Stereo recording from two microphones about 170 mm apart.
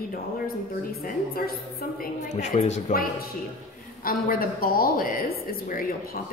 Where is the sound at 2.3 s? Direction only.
40° left (ahead or behind).